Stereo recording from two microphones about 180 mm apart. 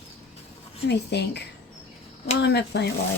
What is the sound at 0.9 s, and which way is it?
Speech, 70° left (ahead or behind).